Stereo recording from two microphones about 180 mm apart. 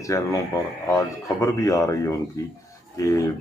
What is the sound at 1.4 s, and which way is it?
Speech, 20° left (ahead or behind).